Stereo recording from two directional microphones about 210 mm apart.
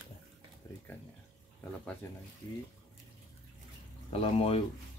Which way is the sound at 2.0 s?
15° left (ahead or behind).